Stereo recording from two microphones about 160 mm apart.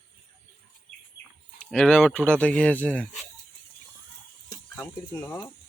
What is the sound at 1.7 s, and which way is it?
Speech, 5° left (ahead or behind).